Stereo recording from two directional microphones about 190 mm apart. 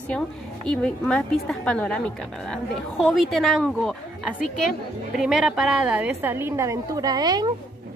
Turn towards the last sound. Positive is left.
turn(degrees=-20)  # may be behind; listen again after turning